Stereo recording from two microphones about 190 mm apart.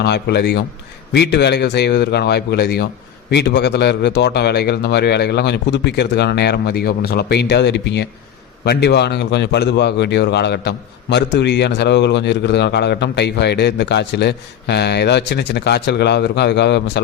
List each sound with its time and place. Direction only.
0.0 s speech: 60° left (ahead or behind)